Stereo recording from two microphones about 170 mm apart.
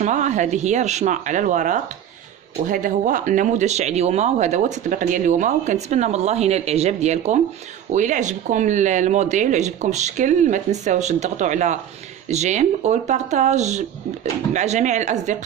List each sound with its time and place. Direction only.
0.0 s speech: 45° right (ahead or behind)